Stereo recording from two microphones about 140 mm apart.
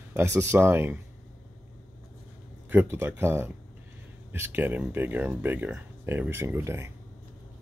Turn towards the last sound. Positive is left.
turn(degrees=-20)  # may be behind; listen again after turning